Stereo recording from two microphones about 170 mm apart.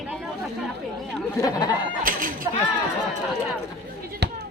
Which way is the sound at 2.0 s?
55° right (ahead or behind).